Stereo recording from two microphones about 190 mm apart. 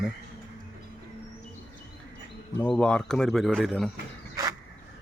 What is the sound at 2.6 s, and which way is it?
Speech, 5° left (ahead or behind).